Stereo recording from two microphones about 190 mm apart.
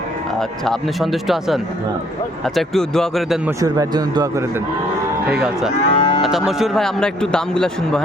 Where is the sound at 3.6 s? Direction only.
20° right (ahead or behind).